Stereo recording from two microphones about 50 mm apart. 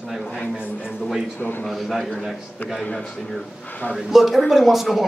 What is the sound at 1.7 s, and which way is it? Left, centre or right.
Speech, centre.